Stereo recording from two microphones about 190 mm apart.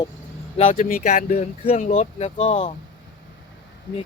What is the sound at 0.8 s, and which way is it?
Speech, 45° left (ahead or behind).